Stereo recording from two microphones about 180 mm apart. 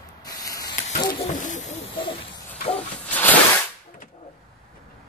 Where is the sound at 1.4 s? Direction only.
45° left (ahead or behind).